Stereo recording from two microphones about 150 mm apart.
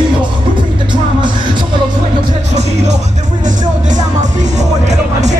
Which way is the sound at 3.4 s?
55° right (ahead or behind).